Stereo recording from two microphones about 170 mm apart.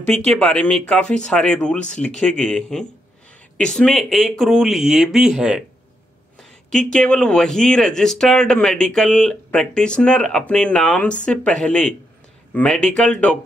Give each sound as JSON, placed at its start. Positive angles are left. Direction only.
{"t": 0.0, "sound": "speech", "side_deg": 5}
{"t": 6.7, "sound": "speech", "side_deg": 5}